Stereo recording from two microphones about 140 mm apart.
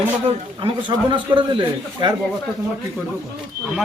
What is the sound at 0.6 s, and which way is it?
Speech, 35° right (ahead or behind).